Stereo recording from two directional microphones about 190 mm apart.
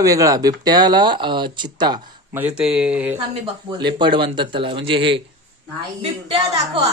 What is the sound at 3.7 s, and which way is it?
Speech, 25° right (ahead or behind).